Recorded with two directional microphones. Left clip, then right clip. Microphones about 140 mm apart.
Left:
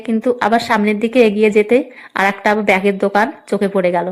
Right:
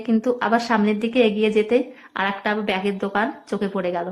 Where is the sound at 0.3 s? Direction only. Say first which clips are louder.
Left 7 dB; 30° left (ahead or behind).